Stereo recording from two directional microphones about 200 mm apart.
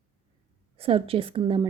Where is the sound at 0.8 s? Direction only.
30° right (ahead or behind).